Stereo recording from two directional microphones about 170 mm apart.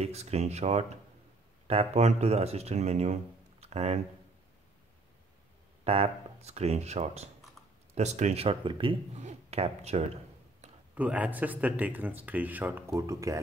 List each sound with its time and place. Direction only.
0.0 s speech: 40° right (ahead or behind)
5.9 s speech: 35° right (ahead or behind)
11.0 s speech: 10° right (ahead or behind)